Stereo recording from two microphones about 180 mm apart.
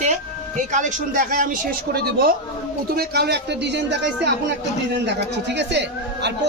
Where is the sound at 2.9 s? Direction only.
60° right (ahead or behind).